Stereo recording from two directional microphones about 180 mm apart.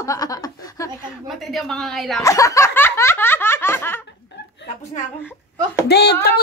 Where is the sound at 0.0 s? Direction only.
20° left (ahead or behind).